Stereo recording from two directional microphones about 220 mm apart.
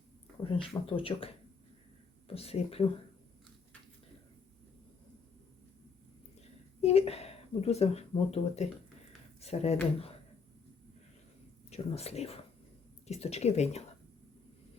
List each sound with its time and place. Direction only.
0.6 s speech: 25° left (ahead or behind)
6.8 s speech: 25° left (ahead or behind)
11.7 s speech: 30° left (ahead or behind)